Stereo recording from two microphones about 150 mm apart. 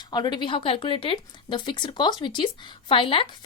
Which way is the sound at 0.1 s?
30° left (ahead or behind).